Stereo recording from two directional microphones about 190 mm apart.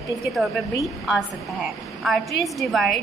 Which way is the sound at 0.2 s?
Centre (ahead or behind).